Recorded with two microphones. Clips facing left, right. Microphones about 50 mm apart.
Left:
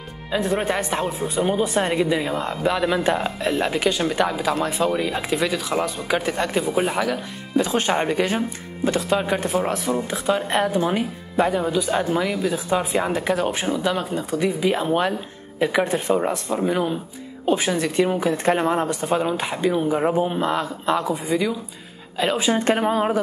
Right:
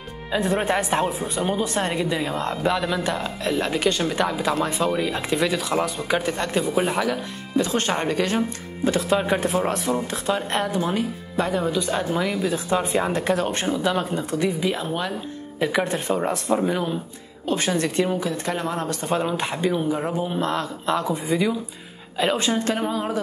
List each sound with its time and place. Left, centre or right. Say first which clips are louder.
0.3 s speech: even; centre
11.5 s speech: left 2 dB; centre
14.7 s a woman's voice: left 5 dB; left
15.6 s speech: left 2 dB; centre
18.1 s a woman's voice: left 5 dB; left
18.8 s speech: left 4 dB; centre
19.0 s speech: left 2 dB; centre
19.9 s a woman's voice: left 4 dB; left
20.3 s a woman's voice: left 2 dB; centre
22.7 s speech: left 5 dB; left